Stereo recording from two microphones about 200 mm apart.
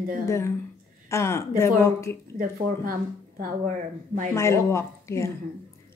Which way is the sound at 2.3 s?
45° right (ahead or behind).